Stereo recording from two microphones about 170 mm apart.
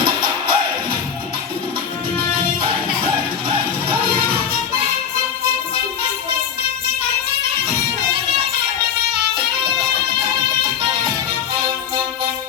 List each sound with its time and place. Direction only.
0.0 s music: 30° right (ahead or behind)